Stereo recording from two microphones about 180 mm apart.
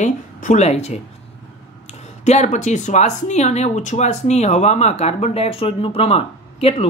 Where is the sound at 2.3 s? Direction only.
40° left (ahead or behind).